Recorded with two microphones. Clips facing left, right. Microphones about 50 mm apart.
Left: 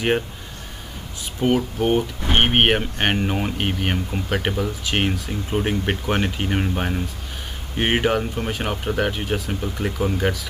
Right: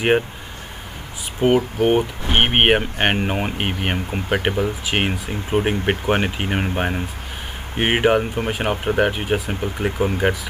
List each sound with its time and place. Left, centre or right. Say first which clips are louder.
1.4 s speech: right 3 dB; centre